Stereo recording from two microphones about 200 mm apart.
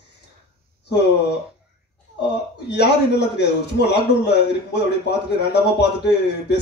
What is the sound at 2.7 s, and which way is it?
A man's voice, 60° left (ahead or behind).